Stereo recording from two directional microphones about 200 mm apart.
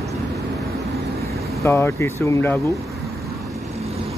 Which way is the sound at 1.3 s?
15° left (ahead or behind).